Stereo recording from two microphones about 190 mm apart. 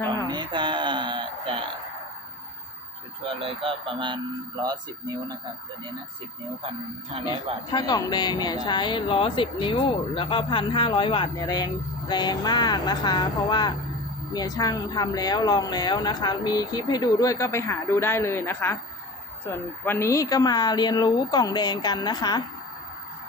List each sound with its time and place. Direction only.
0.3 s a sound: 25° right (ahead or behind)
3.4 s speech: 30° right (ahead or behind)
7.1 s speech: 30° right (ahead or behind)
7.7 s speech: 25° left (ahead or behind)
19.8 s speech: 10° left (ahead or behind)